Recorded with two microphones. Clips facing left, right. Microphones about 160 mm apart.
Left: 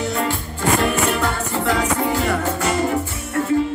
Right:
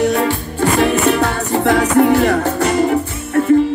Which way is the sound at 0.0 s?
65° right (ahead or behind).